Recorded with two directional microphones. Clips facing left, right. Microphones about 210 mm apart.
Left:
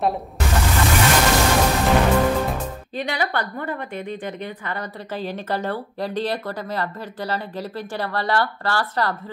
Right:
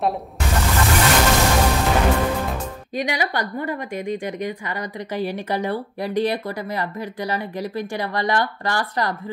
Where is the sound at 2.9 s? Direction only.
10° right (ahead or behind).